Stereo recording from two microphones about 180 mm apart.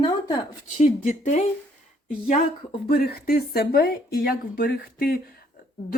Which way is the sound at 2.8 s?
60° left (ahead or behind).